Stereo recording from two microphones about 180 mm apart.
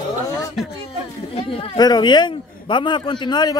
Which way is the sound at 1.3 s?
25° left (ahead or behind).